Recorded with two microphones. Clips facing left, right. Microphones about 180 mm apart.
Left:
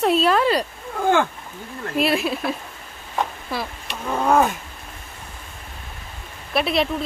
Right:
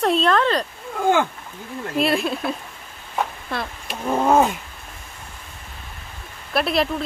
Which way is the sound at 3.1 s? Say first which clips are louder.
Even; centre (ahead or behind).